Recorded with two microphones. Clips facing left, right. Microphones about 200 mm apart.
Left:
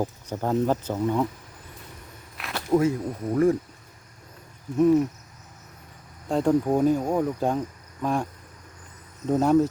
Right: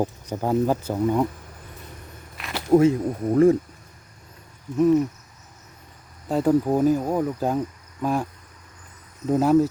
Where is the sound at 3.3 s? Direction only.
25° right (ahead or behind).